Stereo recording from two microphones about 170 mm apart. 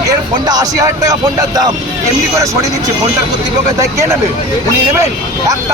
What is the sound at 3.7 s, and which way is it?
A man's voice, 20° right (ahead or behind).